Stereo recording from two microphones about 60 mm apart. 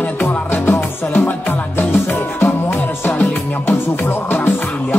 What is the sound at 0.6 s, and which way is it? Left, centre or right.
Music, left.